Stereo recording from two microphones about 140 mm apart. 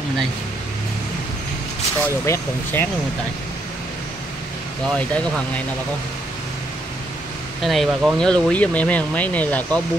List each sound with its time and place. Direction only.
2.0 s speech: 20° left (ahead or behind)
7.6 s speech: centre (ahead or behind)